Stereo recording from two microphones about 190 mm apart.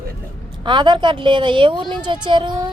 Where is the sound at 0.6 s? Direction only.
25° right (ahead or behind).